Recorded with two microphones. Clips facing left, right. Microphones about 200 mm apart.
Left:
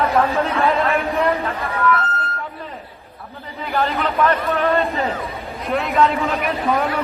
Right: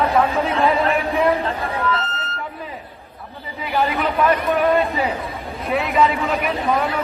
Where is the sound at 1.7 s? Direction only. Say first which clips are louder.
Left 6 dB; 30° right (ahead or behind).